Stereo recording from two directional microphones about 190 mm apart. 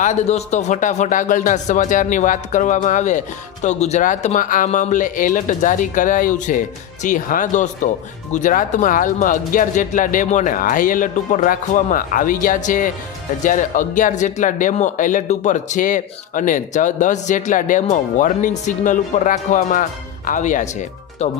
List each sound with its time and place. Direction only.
0.0 s speech: 40° left (ahead or behind)